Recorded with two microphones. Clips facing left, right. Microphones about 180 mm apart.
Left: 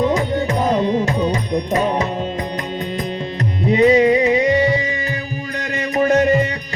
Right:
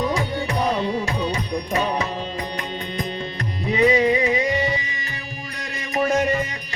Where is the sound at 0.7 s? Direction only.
40° left (ahead or behind).